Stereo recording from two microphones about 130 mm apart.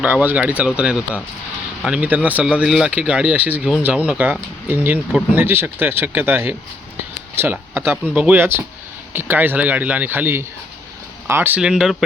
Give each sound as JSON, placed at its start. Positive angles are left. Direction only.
{"t": 0.0, "sound": "speech", "side_deg": -15}